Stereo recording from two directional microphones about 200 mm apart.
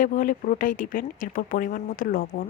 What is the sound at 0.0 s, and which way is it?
Speech, 40° left (ahead or behind).